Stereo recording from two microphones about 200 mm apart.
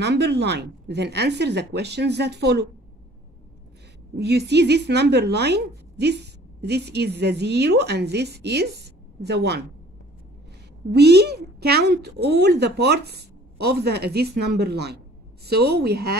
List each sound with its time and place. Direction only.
0.0 s a woman's voice: 55° right (ahead or behind)
4.2 s a woman's voice: 55° right (ahead or behind)
10.9 s a woman's voice: 55° right (ahead or behind)